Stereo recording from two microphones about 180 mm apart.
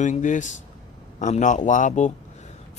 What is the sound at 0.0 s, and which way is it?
Speech, 45° left (ahead or behind).